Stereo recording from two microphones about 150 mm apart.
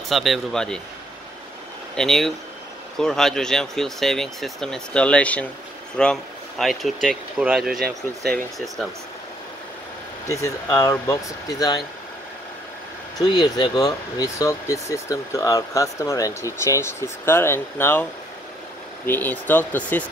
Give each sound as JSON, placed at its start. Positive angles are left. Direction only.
{"t": 0.1, "sound": "speech", "side_deg": 0}
{"t": 2.0, "sound": "speech", "side_deg": 5}
{"t": 10.2, "sound": "speech", "side_deg": 20}
{"t": 13.2, "sound": "speech", "side_deg": 30}
{"t": 19.0, "sound": "speech", "side_deg": 10}